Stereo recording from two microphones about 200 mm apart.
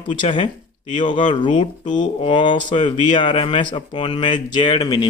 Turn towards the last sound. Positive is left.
turn(degrees=20)  # may be behind; listen again after turning